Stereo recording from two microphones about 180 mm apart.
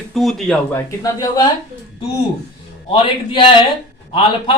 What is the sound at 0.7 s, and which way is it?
Speech, 20° left (ahead or behind).